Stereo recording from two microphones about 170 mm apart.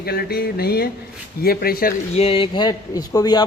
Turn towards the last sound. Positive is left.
turn(degrees=20)  # may be behind; listen again after turning